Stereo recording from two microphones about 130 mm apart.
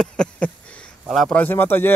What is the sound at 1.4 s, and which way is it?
Speech, 15° left (ahead or behind).